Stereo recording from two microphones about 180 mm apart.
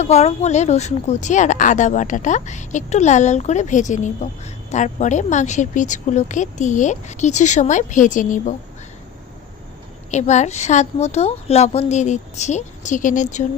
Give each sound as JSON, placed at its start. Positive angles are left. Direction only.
{"t": 0.0, "sound": "speech", "side_deg": 35}
{"t": 10.1, "sound": "a woman's voice", "side_deg": 40}